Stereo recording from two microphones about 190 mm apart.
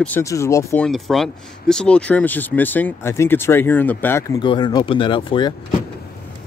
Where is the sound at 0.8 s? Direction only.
Centre (ahead or behind).